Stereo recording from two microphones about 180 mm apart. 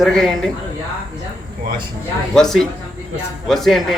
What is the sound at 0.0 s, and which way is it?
Speech, centre (ahead or behind).